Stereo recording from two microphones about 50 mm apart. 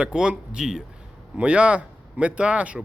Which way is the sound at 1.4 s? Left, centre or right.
Right.